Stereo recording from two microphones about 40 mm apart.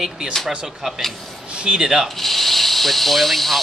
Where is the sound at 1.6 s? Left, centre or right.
Right.